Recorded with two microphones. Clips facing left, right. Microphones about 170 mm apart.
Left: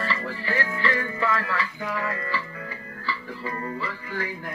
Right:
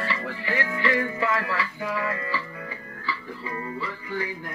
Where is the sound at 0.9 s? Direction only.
25° right (ahead or behind).